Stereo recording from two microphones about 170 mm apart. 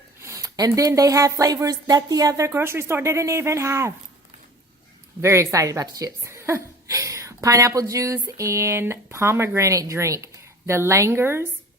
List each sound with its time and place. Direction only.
0.2 s speech: 20° right (ahead or behind)
5.2 s speech: 15° right (ahead or behind)